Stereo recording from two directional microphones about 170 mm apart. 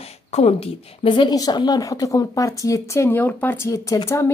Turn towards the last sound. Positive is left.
turn(degrees=15)  # may be behind; listen again after turning